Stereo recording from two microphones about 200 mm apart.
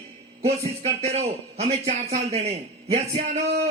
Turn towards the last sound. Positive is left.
turn(degrees=-35)  # may be behind; listen again after turning